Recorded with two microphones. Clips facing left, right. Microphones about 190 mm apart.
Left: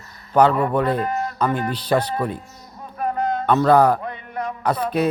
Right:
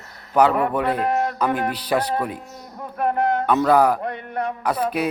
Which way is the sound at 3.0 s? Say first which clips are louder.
Right 2 dB; 65° right (ahead or behind).